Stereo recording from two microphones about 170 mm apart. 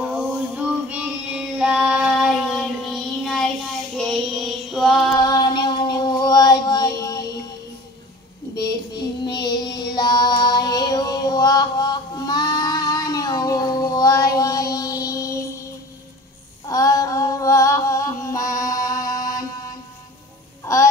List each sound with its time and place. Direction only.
0.0 s child singing: 10° right (ahead or behind)
5.1 s child singing: 25° left (ahead or behind)
8.6 s music: 25° left (ahead or behind)
15.0 s mantra: 20° left (ahead or behind)
16.6 s singing: 20° left (ahead or behind)
20.6 s music: 15° left (ahead or behind)